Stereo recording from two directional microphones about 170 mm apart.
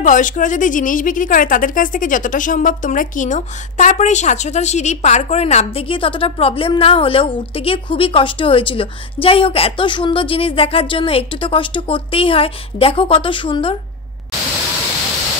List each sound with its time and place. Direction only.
0.0 s a woman's voice: 50° left (ahead or behind); by 13.7 s 30° left (ahead or behind)